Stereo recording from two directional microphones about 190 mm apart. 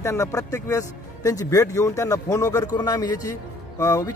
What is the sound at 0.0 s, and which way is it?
Speech, 15° left (ahead or behind).